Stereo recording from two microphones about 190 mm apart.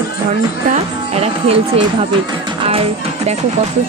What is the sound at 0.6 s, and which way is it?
A woman's voice, 30° right (ahead or behind).